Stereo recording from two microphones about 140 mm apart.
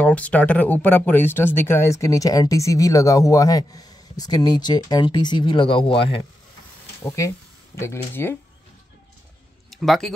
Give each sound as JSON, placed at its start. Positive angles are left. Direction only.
{"t": 0.0, "sound": "speech", "side_deg": 10}
{"t": 7.0, "sound": "speech", "side_deg": 20}
{"t": 9.7, "sound": "speech", "side_deg": 0}